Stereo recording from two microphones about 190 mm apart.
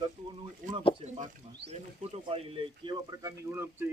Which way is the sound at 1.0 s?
35° right (ahead or behind).